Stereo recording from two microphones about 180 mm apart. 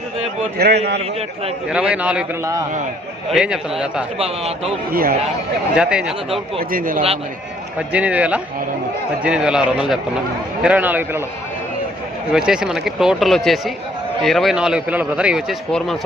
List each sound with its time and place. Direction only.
0.6 s a man's voice: 65° right (ahead or behind)
1.7 s a man's voice: 5° right (ahead or behind)
4.2 s a man's voice: 35° right (ahead or behind)
4.9 s speech: 55° right (ahead or behind)
5.7 s a man's voice: 5° right (ahead or behind)
6.7 s speech: 50° right (ahead or behind)
7.8 s a man's voice: 5° right (ahead or behind)
12.3 s a man's voice: 5° right (ahead or behind)